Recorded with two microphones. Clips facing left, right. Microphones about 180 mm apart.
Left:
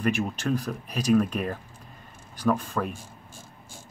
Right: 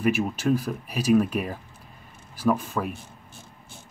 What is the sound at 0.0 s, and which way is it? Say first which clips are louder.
Speech: right 3 dB; 10° right (ahead or behind).